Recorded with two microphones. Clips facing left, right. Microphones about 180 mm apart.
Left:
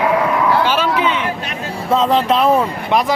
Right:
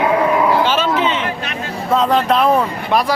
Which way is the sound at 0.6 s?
10° left (ahead or behind).